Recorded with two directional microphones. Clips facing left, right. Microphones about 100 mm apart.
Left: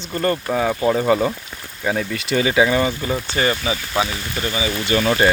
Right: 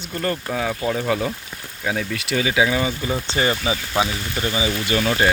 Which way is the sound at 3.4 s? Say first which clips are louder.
Even; 20° right (ahead or behind).